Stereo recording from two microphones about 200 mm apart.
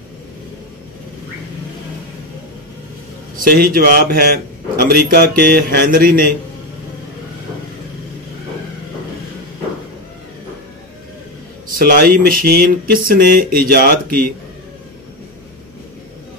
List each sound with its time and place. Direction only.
3.3 s a man's voice: 45° right (ahead or behind)
11.8 s a man's voice: 50° right (ahead or behind)